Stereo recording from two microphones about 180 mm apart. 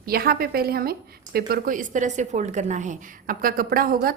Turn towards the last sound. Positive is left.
turn(degrees=-55)  # may be behind; listen again after turning